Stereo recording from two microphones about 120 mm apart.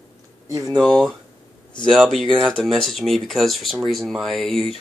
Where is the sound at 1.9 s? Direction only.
Centre (ahead or behind).